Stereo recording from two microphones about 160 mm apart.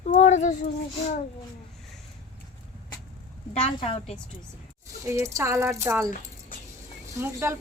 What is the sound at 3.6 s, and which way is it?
Speech, 40° left (ahead or behind).